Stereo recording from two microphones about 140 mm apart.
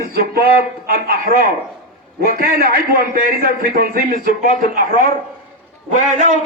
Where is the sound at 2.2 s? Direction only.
90° right.